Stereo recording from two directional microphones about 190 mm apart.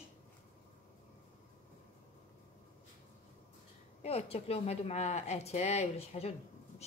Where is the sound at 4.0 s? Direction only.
30° left (ahead or behind).